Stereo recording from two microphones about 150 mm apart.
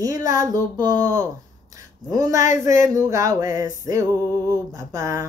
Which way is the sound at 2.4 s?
55° left (ahead or behind).